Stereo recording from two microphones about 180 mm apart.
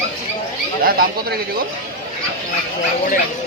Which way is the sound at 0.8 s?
55° right (ahead or behind).